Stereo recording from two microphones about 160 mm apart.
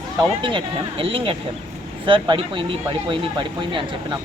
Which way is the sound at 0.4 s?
35° right (ahead or behind).